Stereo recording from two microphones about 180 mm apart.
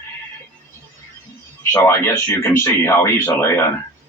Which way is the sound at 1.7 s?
15° left (ahead or behind).